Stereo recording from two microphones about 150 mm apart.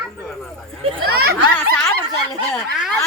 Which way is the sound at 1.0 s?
90° right.